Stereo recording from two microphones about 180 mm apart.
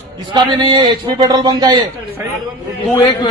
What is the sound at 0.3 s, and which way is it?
A man's voice, 25° right (ahead or behind).